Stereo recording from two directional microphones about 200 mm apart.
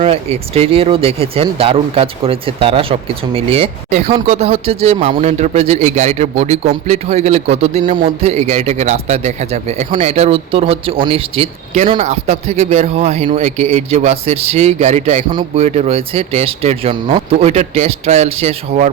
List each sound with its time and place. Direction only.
0.0 s a man's voice: 30° right (ahead or behind)